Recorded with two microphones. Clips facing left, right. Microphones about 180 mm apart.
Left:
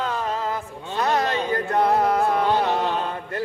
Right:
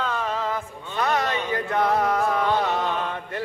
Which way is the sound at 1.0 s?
35° left (ahead or behind).